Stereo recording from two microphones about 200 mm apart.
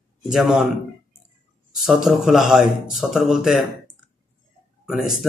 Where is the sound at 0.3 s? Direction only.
Centre (ahead or behind).